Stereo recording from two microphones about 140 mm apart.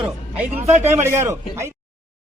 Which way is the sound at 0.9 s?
15° right (ahead or behind).